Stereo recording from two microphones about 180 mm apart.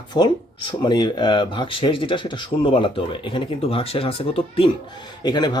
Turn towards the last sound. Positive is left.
turn(degrees=25)  # may be behind; listen again after turning